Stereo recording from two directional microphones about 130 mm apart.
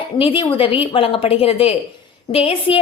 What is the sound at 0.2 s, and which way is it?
A woman's voice, 45° left (ahead or behind).